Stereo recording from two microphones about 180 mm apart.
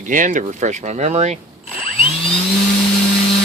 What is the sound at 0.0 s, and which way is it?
Speech, 45° right (ahead or behind).